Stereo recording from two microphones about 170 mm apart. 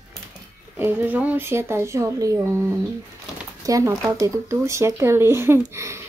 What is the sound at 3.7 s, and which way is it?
Speech, 20° right (ahead or behind).